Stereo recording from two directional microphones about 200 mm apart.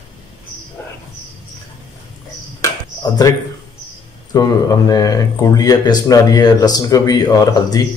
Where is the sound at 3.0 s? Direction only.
20° left (ahead or behind).